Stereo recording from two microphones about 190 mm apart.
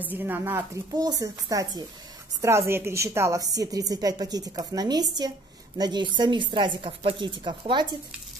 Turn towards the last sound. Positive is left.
turn(degrees=-25)  # may be behind; listen again after turning